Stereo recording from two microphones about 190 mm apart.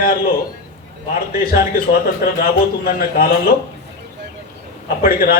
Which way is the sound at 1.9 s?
50° left (ahead or behind).